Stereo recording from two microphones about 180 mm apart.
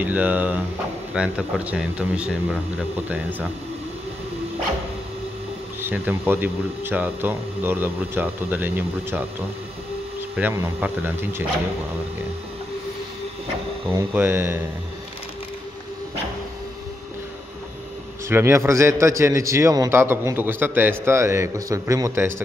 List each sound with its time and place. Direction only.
0.0 s a man's voice: 10° right (ahead or behind)
5.8 s a man's voice: 10° right (ahead or behind)
10.3 s a man's voice: 10° right (ahead or behind)
13.9 s a man's voice: 10° right (ahead or behind)
18.3 s a man's voice: 15° right (ahead or behind)